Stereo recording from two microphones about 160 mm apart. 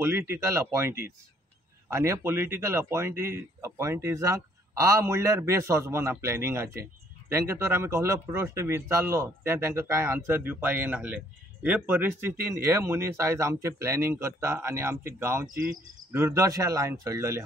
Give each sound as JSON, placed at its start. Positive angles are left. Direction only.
{"t": 0.0, "sound": "speech", "side_deg": -15}